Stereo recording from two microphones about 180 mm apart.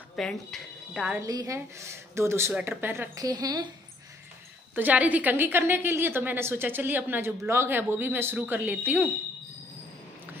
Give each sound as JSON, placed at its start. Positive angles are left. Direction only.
{"t": 0.1, "sound": "speech", "side_deg": 5}
{"t": 1.2, "sound": "a woman's voice", "side_deg": -20}
{"t": 4.7, "sound": "a woman's voice", "side_deg": -10}